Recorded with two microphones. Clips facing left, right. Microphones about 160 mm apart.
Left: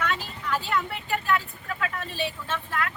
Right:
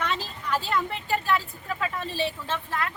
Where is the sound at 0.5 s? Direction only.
35° right (ahead or behind).